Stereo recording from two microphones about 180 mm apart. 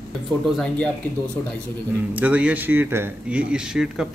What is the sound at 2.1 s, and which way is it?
Speech, 10° right (ahead or behind).